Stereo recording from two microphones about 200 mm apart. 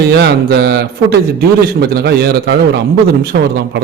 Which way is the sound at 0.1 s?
55° right (ahead or behind).